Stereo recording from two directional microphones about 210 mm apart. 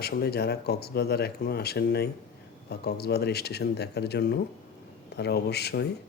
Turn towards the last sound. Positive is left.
turn(degrees=50)  # may be behind; listen again after turning